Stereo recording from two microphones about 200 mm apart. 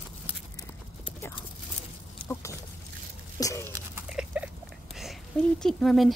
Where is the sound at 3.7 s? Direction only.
5° right (ahead or behind).